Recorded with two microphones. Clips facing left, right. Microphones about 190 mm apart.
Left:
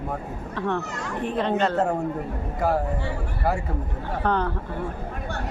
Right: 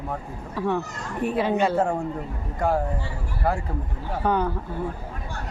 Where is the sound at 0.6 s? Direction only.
10° right (ahead or behind).